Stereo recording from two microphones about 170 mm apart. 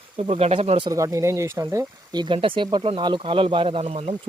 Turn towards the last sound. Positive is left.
turn(degrees=-35)  # may be behind; listen again after turning